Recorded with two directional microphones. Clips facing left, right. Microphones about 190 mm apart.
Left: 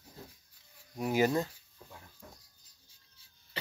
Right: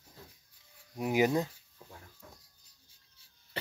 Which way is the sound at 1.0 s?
15° right (ahead or behind).